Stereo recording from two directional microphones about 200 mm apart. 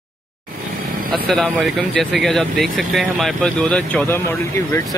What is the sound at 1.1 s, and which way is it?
Speech, 5° left (ahead or behind).